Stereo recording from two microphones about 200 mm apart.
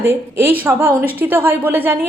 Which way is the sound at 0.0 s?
15° right (ahead or behind).